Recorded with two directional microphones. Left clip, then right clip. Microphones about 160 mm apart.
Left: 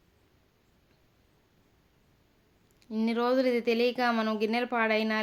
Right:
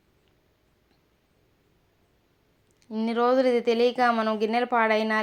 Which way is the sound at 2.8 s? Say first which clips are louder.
Right 5 dB; 10° left (ahead or behind).